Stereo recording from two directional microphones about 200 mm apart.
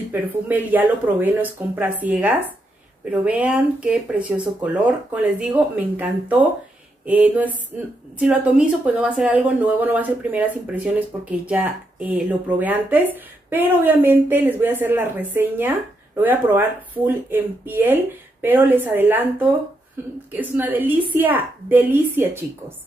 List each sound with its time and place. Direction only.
0.1 s speech: 10° right (ahead or behind)